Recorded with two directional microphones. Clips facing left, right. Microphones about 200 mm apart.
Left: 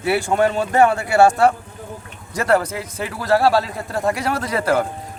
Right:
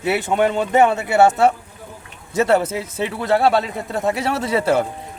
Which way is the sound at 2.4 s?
25° right (ahead or behind).